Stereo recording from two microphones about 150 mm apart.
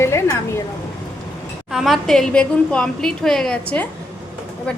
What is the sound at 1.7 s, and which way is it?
A woman's voice, centre (ahead or behind).